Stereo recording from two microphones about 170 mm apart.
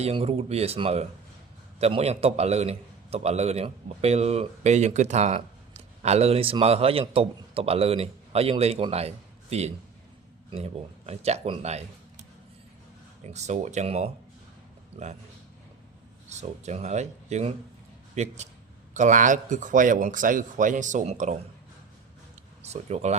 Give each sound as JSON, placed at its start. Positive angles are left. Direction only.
{"t": 0.0, "sound": "a man's voice", "side_deg": -35}
{"t": 13.2, "sound": "speech", "side_deg": -40}
{"t": 16.3, "sound": "a man's voice", "side_deg": -40}
{"t": 22.6, "sound": "a man's voice", "side_deg": -40}